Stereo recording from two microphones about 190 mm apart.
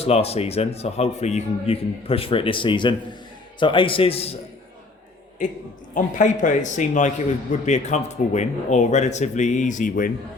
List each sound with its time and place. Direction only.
0.0 s a man's voice: 30° left (ahead or behind)
5.4 s a man's voice: 40° left (ahead or behind)